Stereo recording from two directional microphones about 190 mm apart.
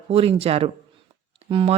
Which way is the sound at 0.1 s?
30° right (ahead or behind).